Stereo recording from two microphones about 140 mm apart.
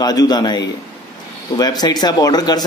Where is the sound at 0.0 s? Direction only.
30° left (ahead or behind).